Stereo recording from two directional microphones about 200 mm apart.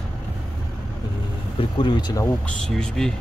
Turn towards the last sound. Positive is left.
turn(degrees=0)  # may be behind; listen again after turning